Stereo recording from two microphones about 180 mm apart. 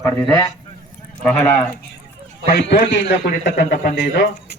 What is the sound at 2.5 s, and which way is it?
A man's voice, 75° left (ahead or behind).